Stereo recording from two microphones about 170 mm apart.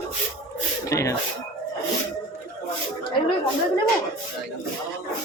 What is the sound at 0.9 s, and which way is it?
Speech, 20° left (ahead or behind).